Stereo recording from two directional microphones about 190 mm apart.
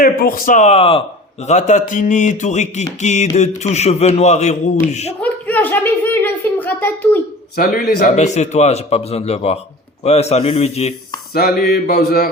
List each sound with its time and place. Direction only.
0.0 s a man's voice: 50° left (ahead or behind)
5.2 s a sound: 10° left (ahead or behind)
7.5 s speech: 50° left (ahead or behind)
8.0 s a man's voice: 35° left (ahead or behind)
11.3 s speech: 55° left (ahead or behind)